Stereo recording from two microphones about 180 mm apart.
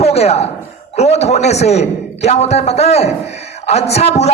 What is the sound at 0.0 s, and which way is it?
A man's voice, 35° left (ahead or behind).